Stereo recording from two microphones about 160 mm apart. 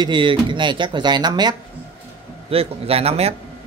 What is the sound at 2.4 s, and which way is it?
Speech, 35° right (ahead or behind).